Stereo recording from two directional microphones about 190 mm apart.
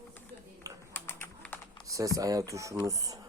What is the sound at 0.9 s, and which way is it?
Typing, 10° left (ahead or behind).